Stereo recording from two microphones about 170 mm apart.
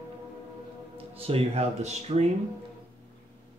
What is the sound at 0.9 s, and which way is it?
Speech, 35° right (ahead or behind).